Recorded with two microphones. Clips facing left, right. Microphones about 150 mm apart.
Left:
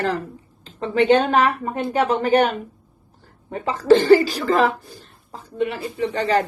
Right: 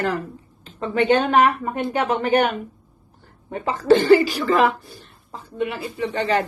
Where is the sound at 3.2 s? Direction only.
35° left (ahead or behind).